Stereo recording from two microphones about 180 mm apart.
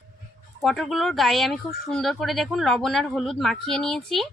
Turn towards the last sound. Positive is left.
turn(degrees=0)  # may be behind; listen again after turning